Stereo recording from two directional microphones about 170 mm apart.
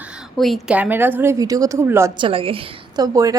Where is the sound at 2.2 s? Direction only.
30° right (ahead or behind).